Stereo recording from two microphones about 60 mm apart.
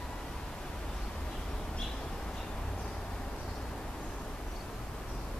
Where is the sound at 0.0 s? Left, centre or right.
Centre.